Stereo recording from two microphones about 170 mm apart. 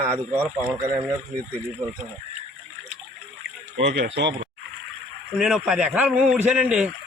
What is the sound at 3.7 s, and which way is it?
Speech, 80° right.